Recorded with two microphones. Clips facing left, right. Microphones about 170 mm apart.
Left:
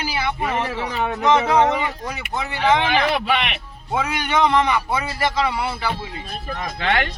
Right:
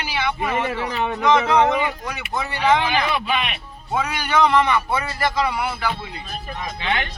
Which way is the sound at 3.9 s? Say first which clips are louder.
Even; 20° left (ahead or behind).